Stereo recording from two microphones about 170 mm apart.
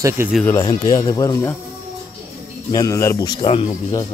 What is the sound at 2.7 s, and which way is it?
Speech, 20° left (ahead or behind).